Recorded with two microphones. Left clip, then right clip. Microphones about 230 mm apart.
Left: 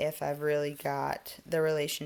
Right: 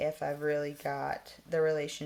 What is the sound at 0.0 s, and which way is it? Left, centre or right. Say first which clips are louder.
Speech: left 1 dB; left.